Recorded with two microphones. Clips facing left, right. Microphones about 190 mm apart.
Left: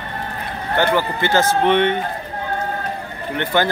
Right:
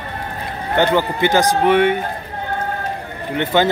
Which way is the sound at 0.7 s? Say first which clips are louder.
Right 2 dB; 20° right (ahead or behind).